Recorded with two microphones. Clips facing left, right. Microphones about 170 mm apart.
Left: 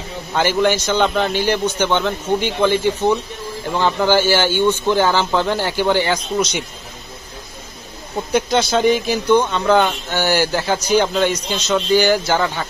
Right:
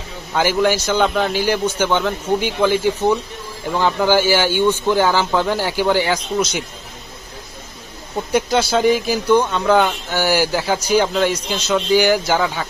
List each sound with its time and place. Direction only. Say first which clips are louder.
0.3 s speech: even; 5° right (ahead or behind)
8.3 s speech: even; 5° right (ahead or behind)